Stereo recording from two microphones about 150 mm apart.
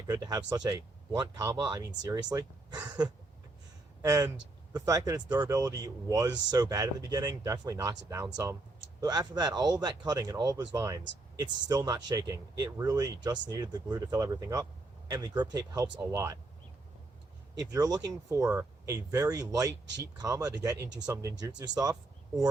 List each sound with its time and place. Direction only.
0.1 s speech: 25° right (ahead or behind)
4.0 s speech: 20° right (ahead or behind)
17.6 s speech: 25° right (ahead or behind)